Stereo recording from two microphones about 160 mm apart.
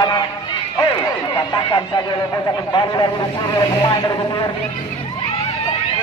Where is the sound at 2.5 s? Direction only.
25° left (ahead or behind).